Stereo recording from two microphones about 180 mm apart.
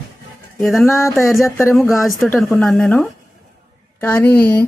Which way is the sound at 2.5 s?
5° left (ahead or behind).